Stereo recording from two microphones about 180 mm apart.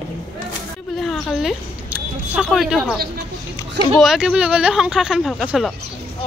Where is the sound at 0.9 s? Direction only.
Centre (ahead or behind).